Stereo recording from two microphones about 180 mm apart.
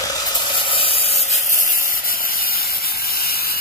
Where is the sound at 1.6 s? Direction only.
50° left (ahead or behind).